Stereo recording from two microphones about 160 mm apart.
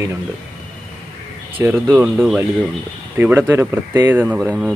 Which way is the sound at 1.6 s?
15° right (ahead or behind).